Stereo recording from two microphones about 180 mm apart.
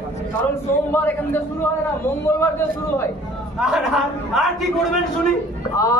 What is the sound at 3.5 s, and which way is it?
A man's voice, 5° right (ahead or behind).